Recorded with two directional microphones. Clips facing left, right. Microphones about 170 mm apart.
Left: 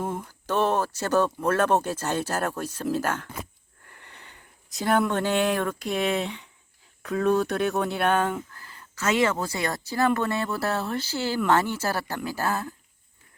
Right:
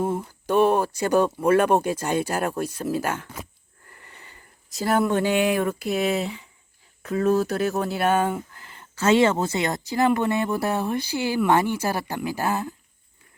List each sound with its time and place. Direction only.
0.0 s speech: 10° right (ahead or behind)
8.5 s speech: 25° right (ahead or behind)